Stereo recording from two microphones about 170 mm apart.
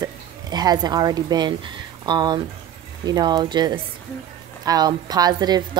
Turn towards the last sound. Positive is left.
turn(degrees=-25)  # may be behind; listen again after turning